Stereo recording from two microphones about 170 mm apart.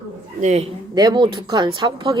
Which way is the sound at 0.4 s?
45° right (ahead or behind).